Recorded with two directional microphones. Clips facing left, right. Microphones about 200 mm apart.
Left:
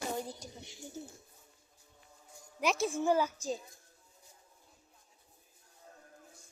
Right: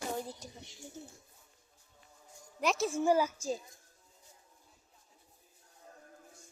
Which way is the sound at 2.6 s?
Centre (ahead or behind).